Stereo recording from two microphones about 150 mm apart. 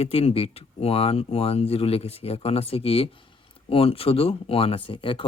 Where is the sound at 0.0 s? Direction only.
45° left (ahead or behind).